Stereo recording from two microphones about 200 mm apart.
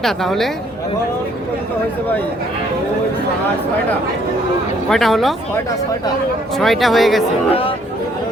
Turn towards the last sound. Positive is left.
turn(degrees=30)  # may be behind; listen again after turning